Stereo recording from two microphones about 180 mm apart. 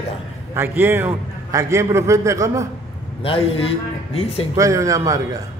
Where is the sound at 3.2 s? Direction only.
30° left (ahead or behind).